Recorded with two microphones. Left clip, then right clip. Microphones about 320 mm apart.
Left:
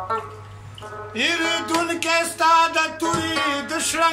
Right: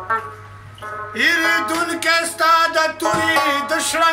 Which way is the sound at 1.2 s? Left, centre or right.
Centre.